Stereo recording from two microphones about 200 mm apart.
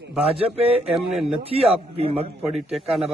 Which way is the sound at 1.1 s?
Centre (ahead or behind).